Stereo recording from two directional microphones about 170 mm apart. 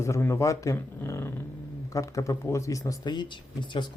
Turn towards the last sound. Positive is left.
turn(degrees=30)  # may be behind; listen again after turning